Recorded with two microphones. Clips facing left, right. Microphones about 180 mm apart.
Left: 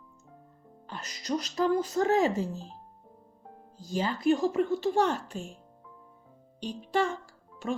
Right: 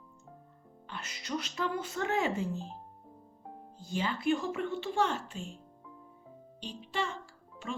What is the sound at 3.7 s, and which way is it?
Speech, 40° left (ahead or behind).